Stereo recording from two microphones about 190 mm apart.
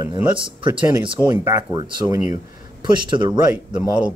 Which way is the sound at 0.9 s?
25° right (ahead or behind).